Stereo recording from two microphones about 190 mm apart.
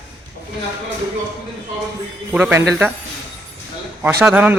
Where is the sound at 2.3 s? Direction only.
10° right (ahead or behind).